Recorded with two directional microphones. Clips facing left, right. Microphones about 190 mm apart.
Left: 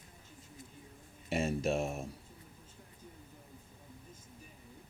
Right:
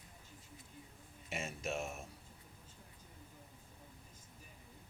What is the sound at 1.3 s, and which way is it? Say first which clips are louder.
Speech: left 9 dB; 35° left (ahead or behind).